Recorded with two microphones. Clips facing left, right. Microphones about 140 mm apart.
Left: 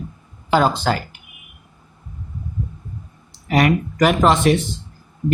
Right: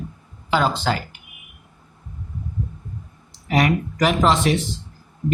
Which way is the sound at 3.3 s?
60° left (ahead or behind).